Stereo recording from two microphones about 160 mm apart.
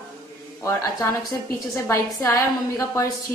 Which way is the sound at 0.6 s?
20° left (ahead or behind).